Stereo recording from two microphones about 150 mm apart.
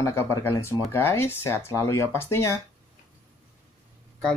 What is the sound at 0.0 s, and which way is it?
Speech, 15° left (ahead or behind).